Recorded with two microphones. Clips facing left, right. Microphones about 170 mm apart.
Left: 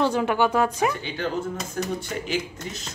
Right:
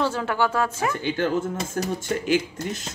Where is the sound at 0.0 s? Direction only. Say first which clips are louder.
Left 2 dB; 15° left (ahead or behind).